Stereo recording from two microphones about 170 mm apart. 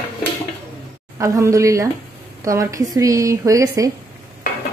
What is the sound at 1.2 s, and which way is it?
A woman's voice, 20° right (ahead or behind).